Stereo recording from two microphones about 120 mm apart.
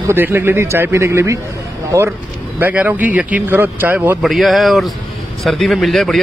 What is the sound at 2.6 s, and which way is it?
A man's voice, 15° right (ahead or behind).